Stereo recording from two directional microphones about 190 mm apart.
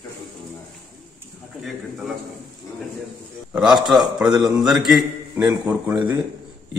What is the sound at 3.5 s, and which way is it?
A man's voice, 5° right (ahead or behind).